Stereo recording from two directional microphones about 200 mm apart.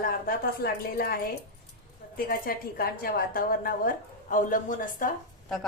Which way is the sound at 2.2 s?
45° left (ahead or behind).